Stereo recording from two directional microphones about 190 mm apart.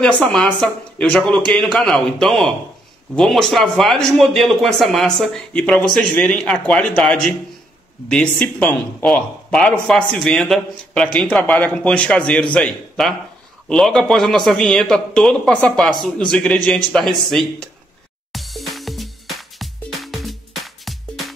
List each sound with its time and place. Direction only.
0.0 s a man's voice: 5° left (ahead or behind)
18.3 s music: centre (ahead or behind)